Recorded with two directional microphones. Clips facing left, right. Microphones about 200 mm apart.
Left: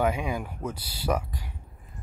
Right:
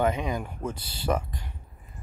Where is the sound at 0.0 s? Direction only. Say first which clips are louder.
Even; 10° left (ahead or behind).